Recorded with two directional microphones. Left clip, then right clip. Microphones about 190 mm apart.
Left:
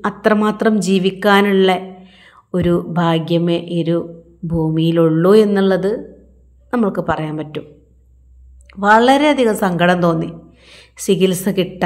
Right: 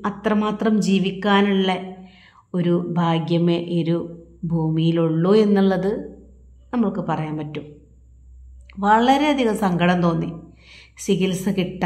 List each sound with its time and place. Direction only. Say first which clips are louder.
0.0 s a woman's voice: left 7 dB; 20° left (ahead or behind)
8.6 s a woman's voice: left 5 dB; 15° left (ahead or behind)